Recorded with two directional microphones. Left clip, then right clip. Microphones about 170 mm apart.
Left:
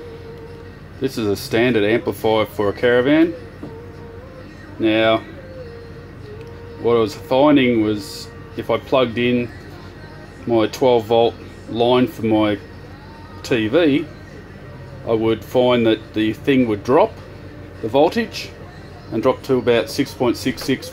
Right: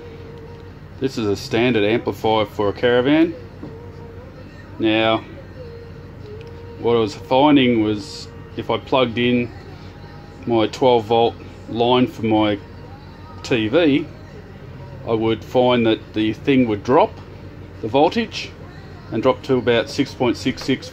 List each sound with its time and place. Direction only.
1.0 s speech: centre (ahead or behind)
4.7 s speech: centre (ahead or behind)
6.8 s speech: centre (ahead or behind)
10.5 s speech: centre (ahead or behind)
15.0 s speech: centre (ahead or behind)